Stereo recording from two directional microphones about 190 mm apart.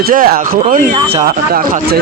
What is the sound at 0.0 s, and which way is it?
Speech, 50° right (ahead or behind).